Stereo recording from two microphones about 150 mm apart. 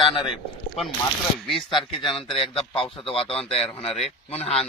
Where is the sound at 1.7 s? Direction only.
35° left (ahead or behind).